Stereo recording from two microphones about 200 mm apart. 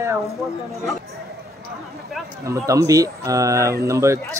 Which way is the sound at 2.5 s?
15° right (ahead or behind).